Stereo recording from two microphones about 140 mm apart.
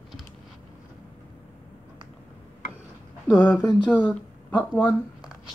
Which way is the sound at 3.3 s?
20° left (ahead or behind).